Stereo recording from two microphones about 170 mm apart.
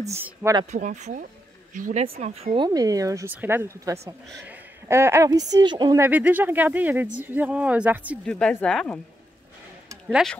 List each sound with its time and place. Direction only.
0.1 s speech: 15° right (ahead or behind)
0.7 s speech: 45° right (ahead or behind)
2.0 s speech: 35° right (ahead or behind); by 4.0 s 15° right (ahead or behind)
4.5 s a sound: 15° right (ahead or behind)
5.5 s speech: 25° right (ahead or behind)
6.0 s speech: 10° right (ahead or behind)
8.3 s speech: 5° left (ahead or behind)